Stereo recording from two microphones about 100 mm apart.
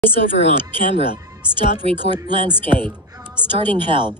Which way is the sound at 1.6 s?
55° right (ahead or behind).